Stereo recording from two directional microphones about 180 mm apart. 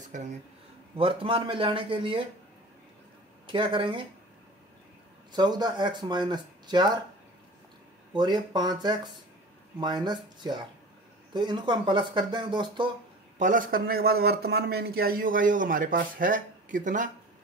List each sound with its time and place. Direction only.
0.0 s speech: 40° right (ahead or behind)
0.9 s speech: 30° right (ahead or behind)
3.4 s speech: 30° right (ahead or behind)
5.3 s speech: 25° right (ahead or behind)
8.2 s speech: 25° right (ahead or behind)
13.4 s a man's voice: 50° right (ahead or behind)